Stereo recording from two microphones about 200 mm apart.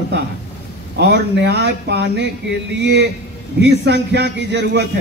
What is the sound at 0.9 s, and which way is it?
A man's voice, 60° right (ahead or behind).